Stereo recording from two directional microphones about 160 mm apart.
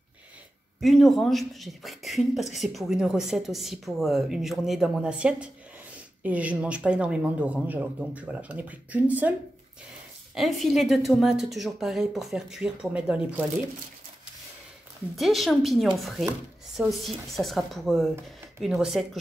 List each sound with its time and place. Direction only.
0.7 s a woman's voice: centre (ahead or behind)
10.3 s speech: centre (ahead or behind)
15.1 s speech: centre (ahead or behind)